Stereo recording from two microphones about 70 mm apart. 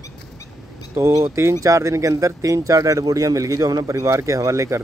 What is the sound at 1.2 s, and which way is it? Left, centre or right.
Speech, right.